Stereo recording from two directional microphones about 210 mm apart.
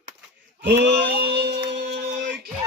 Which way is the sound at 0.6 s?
55° right (ahead or behind).